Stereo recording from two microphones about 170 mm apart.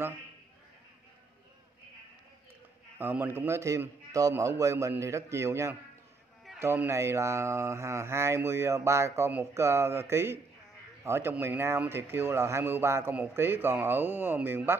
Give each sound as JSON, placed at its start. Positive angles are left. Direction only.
{"t": 3.0, "sound": "speech", "side_deg": -10}